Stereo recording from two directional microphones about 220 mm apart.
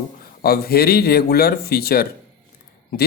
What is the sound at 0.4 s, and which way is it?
Speech, 45° left (ahead or behind).